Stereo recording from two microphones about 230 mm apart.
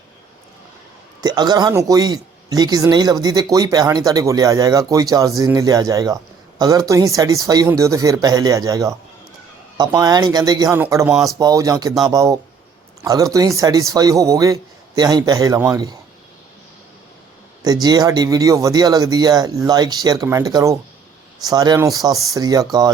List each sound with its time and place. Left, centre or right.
1.2 s speech: centre
17.6 s speech: centre